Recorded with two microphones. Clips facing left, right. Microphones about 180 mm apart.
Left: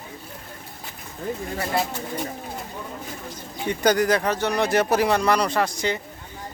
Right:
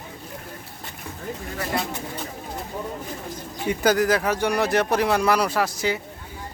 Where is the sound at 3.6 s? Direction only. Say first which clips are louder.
Even; 5° right (ahead or behind).